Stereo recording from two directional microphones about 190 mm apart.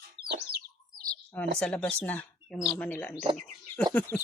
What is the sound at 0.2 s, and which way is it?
Bird, 70° right (ahead or behind).